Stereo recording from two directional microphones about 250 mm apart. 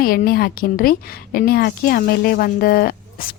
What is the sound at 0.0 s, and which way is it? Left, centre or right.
Speech, left.